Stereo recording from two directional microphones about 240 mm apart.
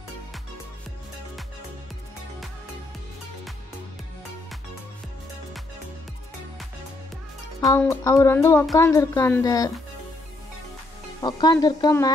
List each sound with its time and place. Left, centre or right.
7.6 s speech: centre
11.1 s speech: centre